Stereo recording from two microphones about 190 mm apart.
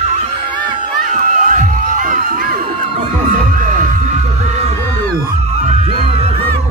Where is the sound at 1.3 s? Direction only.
40° right (ahead or behind).